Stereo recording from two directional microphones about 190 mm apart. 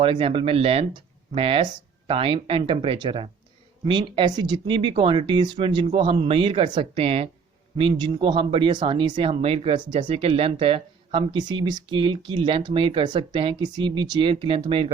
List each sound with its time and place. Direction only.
0.0 s speech: 30° right (ahead or behind)